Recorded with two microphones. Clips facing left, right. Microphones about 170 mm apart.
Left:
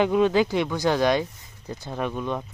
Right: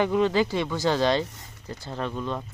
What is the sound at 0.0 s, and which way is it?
Speech, 15° left (ahead or behind).